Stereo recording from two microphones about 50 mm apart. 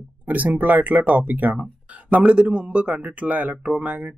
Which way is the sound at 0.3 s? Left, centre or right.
Right.